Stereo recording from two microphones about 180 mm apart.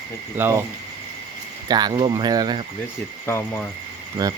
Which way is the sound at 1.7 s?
25° right (ahead or behind).